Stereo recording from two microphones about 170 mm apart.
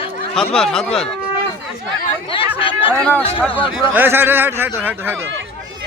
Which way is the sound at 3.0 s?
5° left (ahead or behind).